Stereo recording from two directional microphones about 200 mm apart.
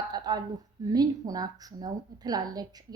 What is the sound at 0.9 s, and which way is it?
Speech, 20° right (ahead or behind).